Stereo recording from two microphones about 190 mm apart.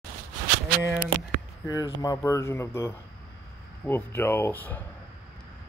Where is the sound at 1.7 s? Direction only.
20° left (ahead or behind).